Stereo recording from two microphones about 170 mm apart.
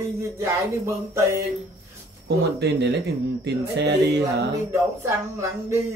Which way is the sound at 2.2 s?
85° right.